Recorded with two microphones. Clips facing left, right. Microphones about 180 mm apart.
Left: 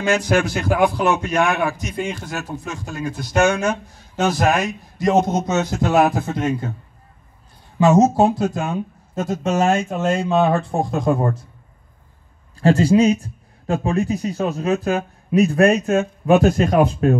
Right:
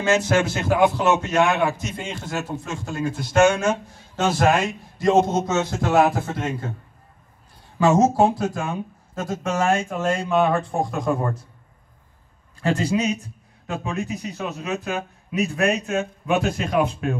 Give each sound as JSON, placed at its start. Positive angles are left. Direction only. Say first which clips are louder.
{"t": 0.0, "sound": "a man's voice", "louder": "left 1 dB", "side_deg": -25}
{"t": 5.0, "sound": "a man's voice", "louder": "left 1 dB", "side_deg": 15}
{"t": 7.8, "sound": "speech", "louder": "left 3 dB", "side_deg": 20}
{"t": 12.5, "sound": "a man's voice", "louder": "left 8 dB", "side_deg": 30}